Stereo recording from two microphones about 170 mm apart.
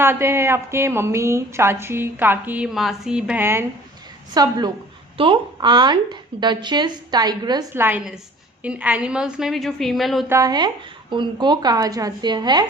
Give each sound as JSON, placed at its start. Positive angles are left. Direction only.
{"t": 0.0, "sound": "a woman's voice", "side_deg": -15}
{"t": 7.7, "sound": "a woman's voice", "side_deg": -10}
{"t": 10.2, "sound": "a woman's voice", "side_deg": -20}